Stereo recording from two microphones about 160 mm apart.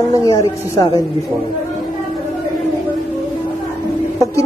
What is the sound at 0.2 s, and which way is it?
Speech, 20° left (ahead or behind).